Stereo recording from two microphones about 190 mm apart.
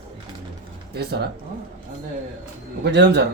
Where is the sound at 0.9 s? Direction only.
55° right (ahead or behind).